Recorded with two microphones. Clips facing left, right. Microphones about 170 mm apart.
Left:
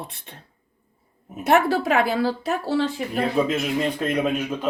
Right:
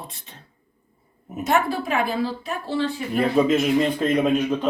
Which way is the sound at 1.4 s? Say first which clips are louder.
Left 3 dB; 75° left (ahead or behind).